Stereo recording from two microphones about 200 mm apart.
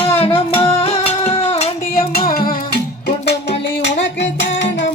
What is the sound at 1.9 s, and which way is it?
Music, 45° left (ahead or behind).